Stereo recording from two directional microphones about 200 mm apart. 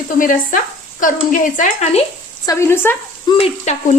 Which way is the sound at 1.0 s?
40° left (ahead or behind).